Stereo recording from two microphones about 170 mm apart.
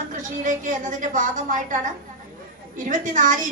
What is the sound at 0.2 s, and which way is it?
A woman's voice, 50° right (ahead or behind).